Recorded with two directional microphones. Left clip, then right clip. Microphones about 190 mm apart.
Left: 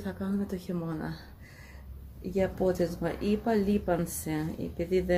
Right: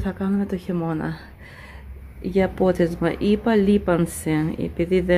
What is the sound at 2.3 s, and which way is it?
Speech, 40° right (ahead or behind).